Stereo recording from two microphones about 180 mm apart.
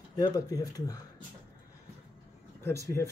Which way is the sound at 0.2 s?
20° left (ahead or behind).